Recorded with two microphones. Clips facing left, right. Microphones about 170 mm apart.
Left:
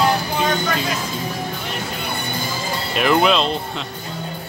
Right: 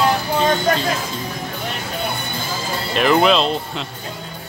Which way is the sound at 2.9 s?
Centre (ahead or behind).